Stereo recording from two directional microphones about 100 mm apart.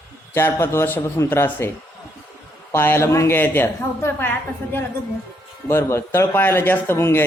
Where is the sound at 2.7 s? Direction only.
25° left (ahead or behind).